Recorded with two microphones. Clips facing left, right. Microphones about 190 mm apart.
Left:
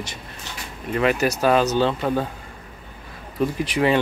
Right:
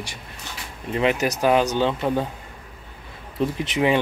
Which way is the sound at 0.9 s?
20° right (ahead or behind).